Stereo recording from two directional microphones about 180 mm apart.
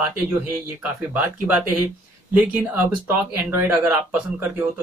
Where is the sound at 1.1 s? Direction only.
10° right (ahead or behind).